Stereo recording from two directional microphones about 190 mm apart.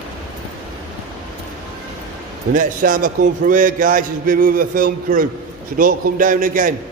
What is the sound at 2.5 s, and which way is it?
A man's voice, 45° right (ahead or behind).